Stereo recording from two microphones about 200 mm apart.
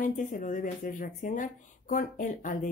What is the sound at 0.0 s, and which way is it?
Speech, 40° left (ahead or behind).